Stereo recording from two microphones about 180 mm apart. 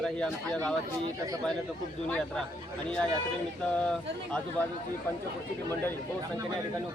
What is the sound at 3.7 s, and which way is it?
Speech, 5° left (ahead or behind).